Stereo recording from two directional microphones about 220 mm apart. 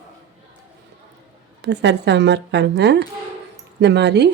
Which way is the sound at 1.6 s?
50° right (ahead or behind).